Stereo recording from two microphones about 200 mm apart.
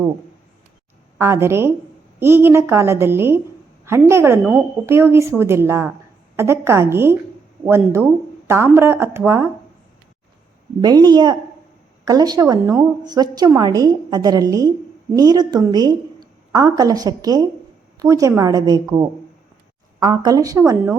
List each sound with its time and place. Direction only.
1.2 s speech: 15° right (ahead or behind)
10.8 s a woman's voice: 20° right (ahead or behind)